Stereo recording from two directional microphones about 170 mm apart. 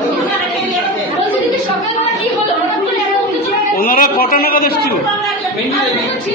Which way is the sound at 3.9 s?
55° left (ahead or behind).